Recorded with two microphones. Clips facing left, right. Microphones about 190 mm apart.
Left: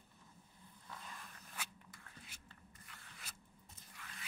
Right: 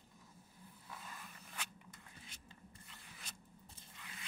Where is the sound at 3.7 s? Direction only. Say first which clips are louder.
Right 1 dB; 25° right (ahead or behind).